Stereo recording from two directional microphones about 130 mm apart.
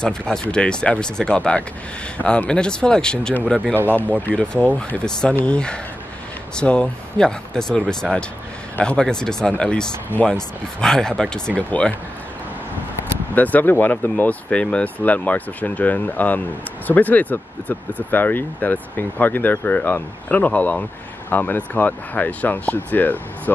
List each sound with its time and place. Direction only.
0.0 s speech: 5° left (ahead or behind)
3.7 s speech: 15° right (ahead or behind)
4.7 s speech: 5° left (ahead or behind)
13.3 s speech: 15° left (ahead or behind)